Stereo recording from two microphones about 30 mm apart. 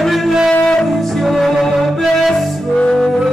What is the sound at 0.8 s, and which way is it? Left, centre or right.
Music, centre.